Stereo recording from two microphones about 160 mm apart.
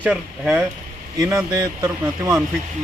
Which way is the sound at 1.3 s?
20° right (ahead or behind).